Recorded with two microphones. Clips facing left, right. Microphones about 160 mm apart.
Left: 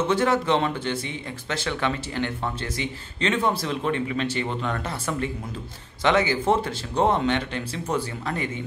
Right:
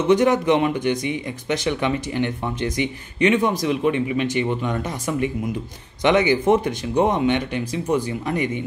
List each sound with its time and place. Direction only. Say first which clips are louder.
0.1 s speech: right 7 dB; 15° right (ahead or behind)